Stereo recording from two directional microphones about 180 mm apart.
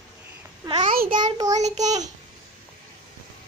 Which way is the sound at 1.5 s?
40° right (ahead or behind).